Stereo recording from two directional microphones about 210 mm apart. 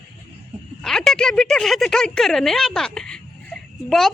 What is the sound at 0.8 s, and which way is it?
Speech, centre (ahead or behind).